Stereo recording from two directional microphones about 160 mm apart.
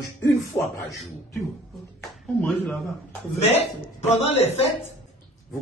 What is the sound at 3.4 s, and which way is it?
A man's voice, 40° left (ahead or behind).